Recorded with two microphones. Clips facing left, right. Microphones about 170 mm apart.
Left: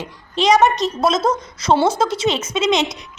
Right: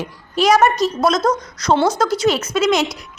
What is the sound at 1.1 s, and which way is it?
A woman's voice, 25° left (ahead or behind).